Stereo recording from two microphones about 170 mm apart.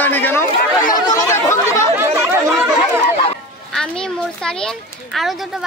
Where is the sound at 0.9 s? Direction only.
20° left (ahead or behind).